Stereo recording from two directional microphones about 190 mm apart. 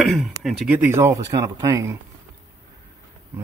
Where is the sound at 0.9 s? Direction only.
15° right (ahead or behind).